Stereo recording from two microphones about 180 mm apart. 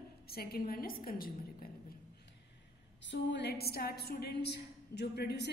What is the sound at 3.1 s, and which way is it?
A woman's voice, 70° left (ahead or behind).